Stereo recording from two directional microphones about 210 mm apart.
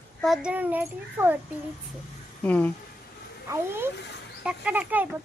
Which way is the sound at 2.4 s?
10° left (ahead or behind).